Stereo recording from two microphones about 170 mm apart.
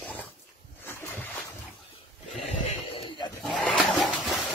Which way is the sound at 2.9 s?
30° left (ahead or behind).